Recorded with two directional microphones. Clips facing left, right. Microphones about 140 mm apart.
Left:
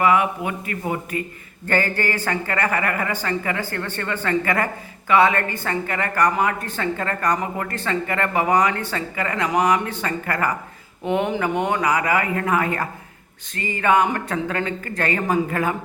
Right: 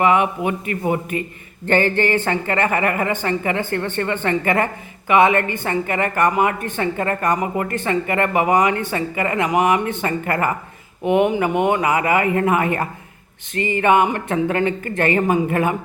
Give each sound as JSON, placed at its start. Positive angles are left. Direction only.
{"t": 0.0, "sound": "speech", "side_deg": -25}